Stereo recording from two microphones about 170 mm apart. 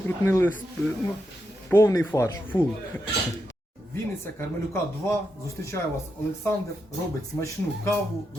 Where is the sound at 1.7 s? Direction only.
15° left (ahead or behind).